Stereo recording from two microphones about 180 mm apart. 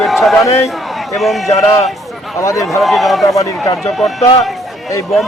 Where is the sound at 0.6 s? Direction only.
Centre (ahead or behind).